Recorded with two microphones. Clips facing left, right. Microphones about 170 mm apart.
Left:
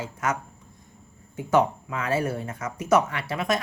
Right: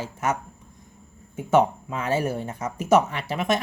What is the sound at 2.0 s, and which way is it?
Speech, 25° right (ahead or behind).